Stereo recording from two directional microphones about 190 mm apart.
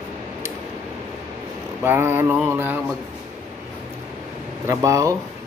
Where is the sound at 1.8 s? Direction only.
10° right (ahead or behind).